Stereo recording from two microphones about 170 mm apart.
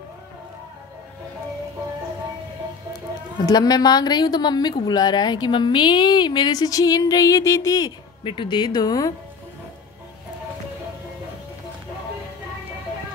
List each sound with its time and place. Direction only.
3.4 s a woman's voice: 25° left (ahead or behind)